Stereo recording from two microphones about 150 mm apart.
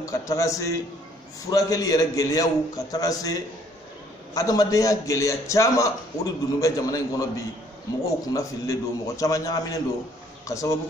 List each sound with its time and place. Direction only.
0.0 s a man's voice: 20° left (ahead or behind)
8.3 s a man's voice: 20° left (ahead or behind)